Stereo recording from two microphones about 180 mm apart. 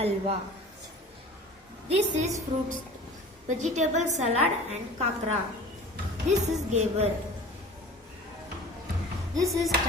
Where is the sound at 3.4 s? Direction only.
40° right (ahead or behind).